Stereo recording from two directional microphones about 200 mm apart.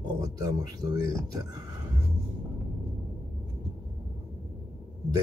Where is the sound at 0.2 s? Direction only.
20° right (ahead or behind).